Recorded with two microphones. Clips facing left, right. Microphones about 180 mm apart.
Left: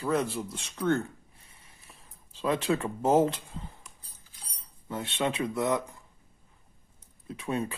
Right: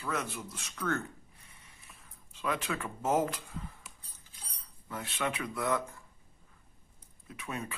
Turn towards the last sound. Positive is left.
turn(degrees=30)  # may be behind; listen again after turning